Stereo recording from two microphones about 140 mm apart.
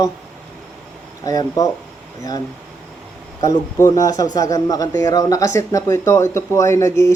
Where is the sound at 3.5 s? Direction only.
25° left (ahead or behind).